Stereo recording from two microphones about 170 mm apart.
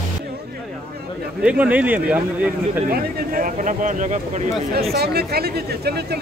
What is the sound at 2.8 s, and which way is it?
Speech, 60° right (ahead or behind).